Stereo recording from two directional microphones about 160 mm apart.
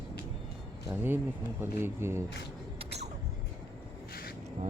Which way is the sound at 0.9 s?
10° right (ahead or behind).